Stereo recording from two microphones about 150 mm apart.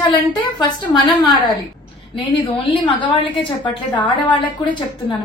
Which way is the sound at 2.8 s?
35° left (ahead or behind).